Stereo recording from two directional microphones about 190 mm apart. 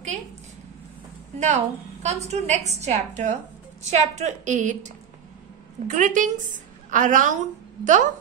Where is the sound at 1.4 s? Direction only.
35° right (ahead or behind).